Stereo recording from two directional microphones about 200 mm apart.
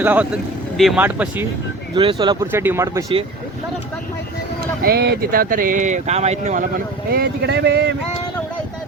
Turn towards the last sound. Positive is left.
turn(degrees=-55)  # may be behind; listen again after turning